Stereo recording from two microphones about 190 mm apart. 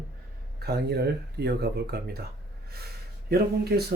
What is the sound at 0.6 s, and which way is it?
Speech, 60° right (ahead or behind).